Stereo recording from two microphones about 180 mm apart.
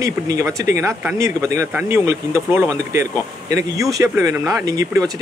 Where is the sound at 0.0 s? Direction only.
15° right (ahead or behind).